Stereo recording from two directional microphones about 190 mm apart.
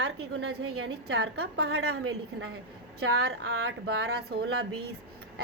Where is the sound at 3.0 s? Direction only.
60° right (ahead or behind).